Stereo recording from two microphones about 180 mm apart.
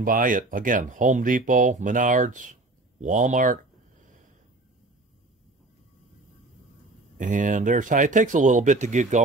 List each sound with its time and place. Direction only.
0.0 s speech: 50° right (ahead or behind)
7.2 s speech: 45° right (ahead or behind)